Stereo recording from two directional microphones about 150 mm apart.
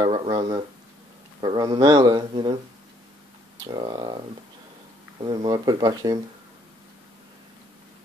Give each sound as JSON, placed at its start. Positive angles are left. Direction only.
{"t": 0.0, "sound": "speech", "side_deg": -35}
{"t": 3.6, "sound": "speech", "side_deg": -30}
{"t": 5.2, "sound": "speech", "side_deg": -30}